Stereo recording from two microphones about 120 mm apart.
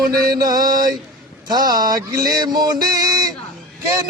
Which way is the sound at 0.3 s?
35° right (ahead or behind).